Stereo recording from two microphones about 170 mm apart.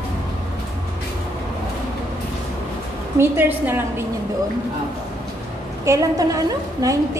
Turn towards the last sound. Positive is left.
turn(degrees=-20)  # may be behind; listen again after turning